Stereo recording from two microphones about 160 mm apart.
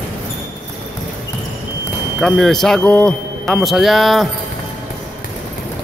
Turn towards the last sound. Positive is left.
turn(degrees=0)  # may be behind; listen again after turning